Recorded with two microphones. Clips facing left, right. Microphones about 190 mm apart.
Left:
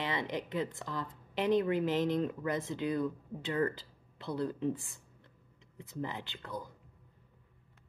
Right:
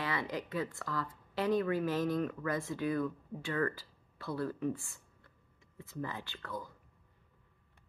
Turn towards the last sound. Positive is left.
turn(degrees=20)  # may be behind; listen again after turning